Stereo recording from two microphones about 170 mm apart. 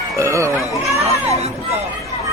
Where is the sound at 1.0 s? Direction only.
40° right (ahead or behind).